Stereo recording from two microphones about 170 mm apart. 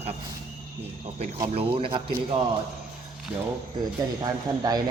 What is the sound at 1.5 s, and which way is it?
Speech, 35° right (ahead or behind).